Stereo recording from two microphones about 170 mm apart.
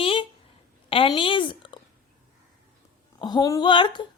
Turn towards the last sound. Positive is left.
turn(degrees=25)  # may be behind; listen again after turning